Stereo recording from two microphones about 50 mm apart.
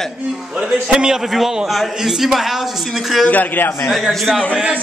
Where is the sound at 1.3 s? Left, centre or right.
Centre.